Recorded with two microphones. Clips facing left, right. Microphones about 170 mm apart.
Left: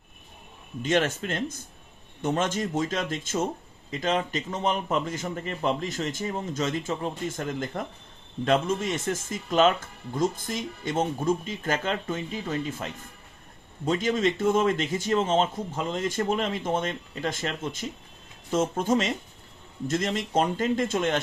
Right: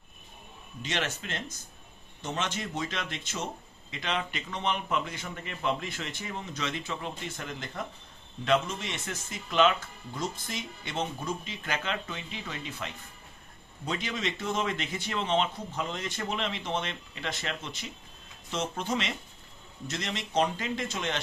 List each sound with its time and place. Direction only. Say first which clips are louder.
0.8 s a man's voice: left 9 dB; 50° left (ahead or behind)